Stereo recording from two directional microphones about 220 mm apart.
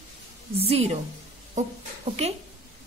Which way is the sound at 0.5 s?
25° right (ahead or behind).